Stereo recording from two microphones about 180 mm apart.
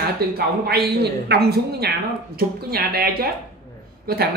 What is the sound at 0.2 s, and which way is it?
A woman's voice, 60° right (ahead or behind).